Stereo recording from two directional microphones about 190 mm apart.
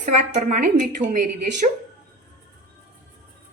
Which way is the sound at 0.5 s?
45° right (ahead or behind).